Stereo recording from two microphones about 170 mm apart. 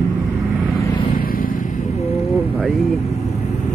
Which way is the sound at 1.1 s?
55° left (ahead or behind).